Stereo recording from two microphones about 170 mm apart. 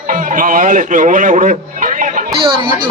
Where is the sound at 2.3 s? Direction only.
30° right (ahead or behind).